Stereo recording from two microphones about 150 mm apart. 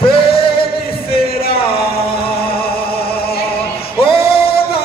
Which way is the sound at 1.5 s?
40° left (ahead or behind).